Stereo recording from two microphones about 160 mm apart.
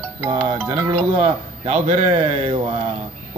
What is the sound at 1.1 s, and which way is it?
A man's voice, 45° right (ahead or behind).